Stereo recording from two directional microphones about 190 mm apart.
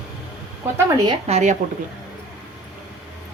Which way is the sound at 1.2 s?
35° right (ahead or behind).